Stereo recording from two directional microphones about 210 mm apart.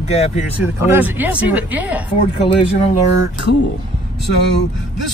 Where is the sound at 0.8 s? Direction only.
10° right (ahead or behind).